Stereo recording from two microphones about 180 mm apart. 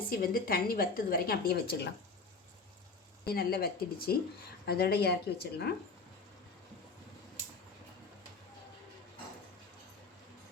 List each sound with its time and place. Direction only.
0.1 s a woman's voice: 55° left (ahead or behind)
3.2 s a woman's voice: 60° left (ahead or behind)